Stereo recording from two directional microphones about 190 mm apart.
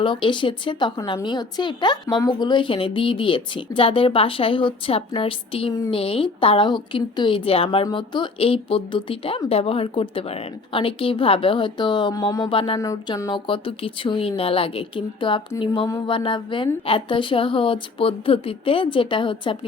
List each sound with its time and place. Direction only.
0.0 s speech: 25° left (ahead or behind)